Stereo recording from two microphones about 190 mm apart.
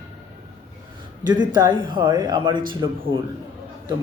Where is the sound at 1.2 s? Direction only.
20° right (ahead or behind).